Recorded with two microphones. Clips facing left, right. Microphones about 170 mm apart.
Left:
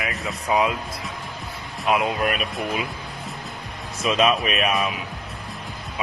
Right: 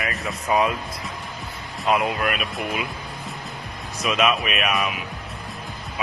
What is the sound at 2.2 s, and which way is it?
Speech, 35° left (ahead or behind).